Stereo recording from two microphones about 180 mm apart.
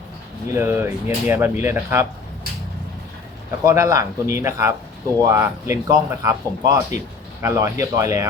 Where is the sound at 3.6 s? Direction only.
15° right (ahead or behind).